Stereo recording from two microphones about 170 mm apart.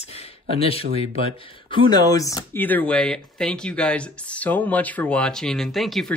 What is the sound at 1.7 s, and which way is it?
Speech, 25° left (ahead or behind).